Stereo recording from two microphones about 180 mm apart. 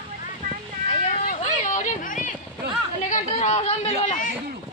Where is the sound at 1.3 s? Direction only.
45° left (ahead or behind).